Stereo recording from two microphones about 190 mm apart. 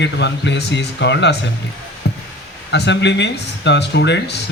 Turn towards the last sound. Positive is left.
turn(degrees=65)  # may be behind; listen again after turning